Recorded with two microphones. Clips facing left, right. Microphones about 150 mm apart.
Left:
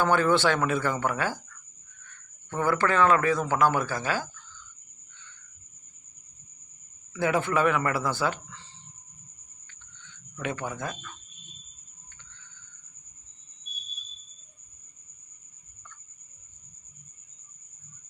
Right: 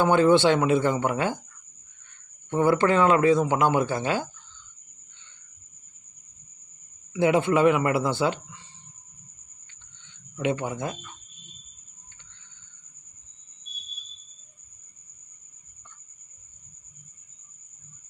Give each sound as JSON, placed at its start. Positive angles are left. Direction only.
{"t": 0.0, "sound": "a man's voice", "side_deg": -20}
{"t": 7.1, "sound": "speech", "side_deg": -20}
{"t": 10.0, "sound": "speech", "side_deg": -20}